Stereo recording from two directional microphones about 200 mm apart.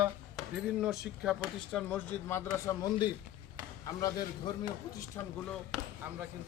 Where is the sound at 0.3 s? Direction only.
Centre (ahead or behind).